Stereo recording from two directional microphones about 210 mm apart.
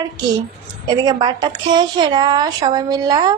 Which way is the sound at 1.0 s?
20° right (ahead or behind).